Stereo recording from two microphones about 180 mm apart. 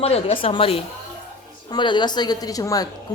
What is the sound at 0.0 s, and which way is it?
A woman's voice, 35° left (ahead or behind).